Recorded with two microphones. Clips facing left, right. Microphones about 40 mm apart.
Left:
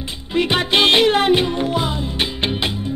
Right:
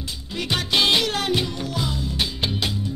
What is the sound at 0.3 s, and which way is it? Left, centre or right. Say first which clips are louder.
Music: left 7 dB; left.